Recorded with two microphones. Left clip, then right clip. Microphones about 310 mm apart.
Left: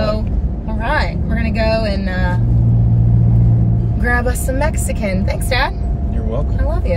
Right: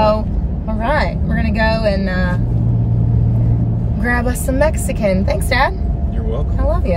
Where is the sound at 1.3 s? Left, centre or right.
Centre.